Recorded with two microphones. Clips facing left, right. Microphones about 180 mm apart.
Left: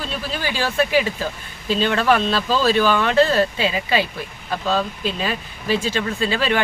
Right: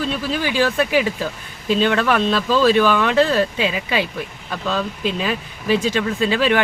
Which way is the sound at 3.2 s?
15° right (ahead or behind).